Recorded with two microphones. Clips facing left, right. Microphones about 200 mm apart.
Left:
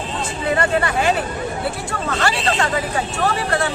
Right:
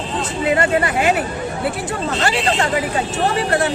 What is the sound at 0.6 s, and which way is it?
Speech, 20° right (ahead or behind).